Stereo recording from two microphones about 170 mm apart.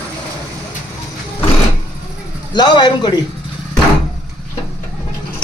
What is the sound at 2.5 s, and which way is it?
Speech, 25° left (ahead or behind).